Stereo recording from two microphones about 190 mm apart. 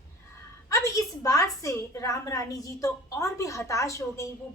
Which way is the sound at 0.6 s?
15° left (ahead or behind).